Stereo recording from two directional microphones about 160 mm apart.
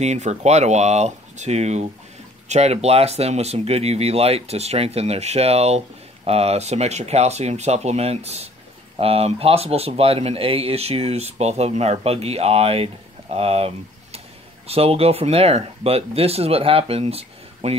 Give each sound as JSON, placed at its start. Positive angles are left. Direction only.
{"t": 0.0, "sound": "speech", "side_deg": -45}